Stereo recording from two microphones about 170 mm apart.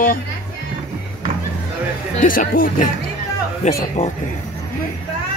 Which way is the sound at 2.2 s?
55° left (ahead or behind).